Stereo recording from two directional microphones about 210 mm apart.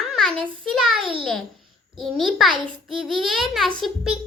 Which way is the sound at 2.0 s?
Centre (ahead or behind).